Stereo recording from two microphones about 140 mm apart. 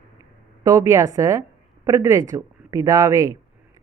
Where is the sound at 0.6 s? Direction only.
25° right (ahead or behind).